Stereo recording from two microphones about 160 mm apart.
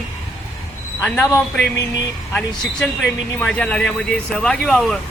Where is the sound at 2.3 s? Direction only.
5° left (ahead or behind).